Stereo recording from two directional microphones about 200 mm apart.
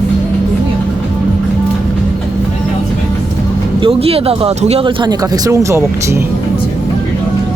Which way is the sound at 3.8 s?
30° right (ahead or behind).